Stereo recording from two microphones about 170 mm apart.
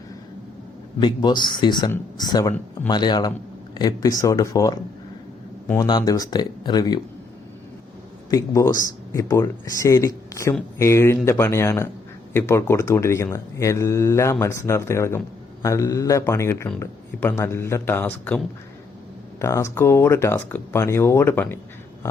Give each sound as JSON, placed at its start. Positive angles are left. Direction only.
{"t": 0.9, "sound": "speech", "side_deg": 25}
{"t": 5.8, "sound": "speech", "side_deg": 25}
{"t": 8.3, "sound": "speech", "side_deg": 15}